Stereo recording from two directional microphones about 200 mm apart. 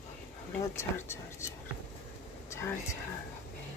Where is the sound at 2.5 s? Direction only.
15° left (ahead or behind).